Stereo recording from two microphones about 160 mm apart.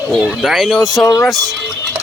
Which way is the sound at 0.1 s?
Centre (ahead or behind).